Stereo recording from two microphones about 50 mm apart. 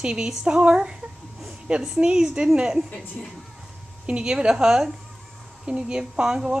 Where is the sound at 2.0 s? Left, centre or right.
Right.